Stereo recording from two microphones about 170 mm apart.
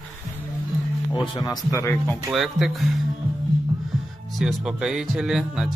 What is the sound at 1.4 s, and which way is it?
Speech, 20° left (ahead or behind).